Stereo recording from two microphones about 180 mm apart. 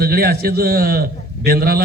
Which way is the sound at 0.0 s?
60° right (ahead or behind).